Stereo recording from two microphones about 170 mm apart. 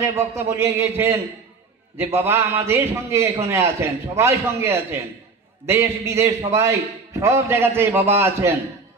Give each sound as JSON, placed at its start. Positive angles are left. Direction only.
{"t": 0.0, "sound": "a man's voice", "side_deg": -15}